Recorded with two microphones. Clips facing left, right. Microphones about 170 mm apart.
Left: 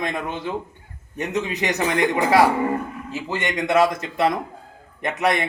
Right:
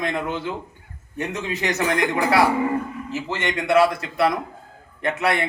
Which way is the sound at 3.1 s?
15° left (ahead or behind).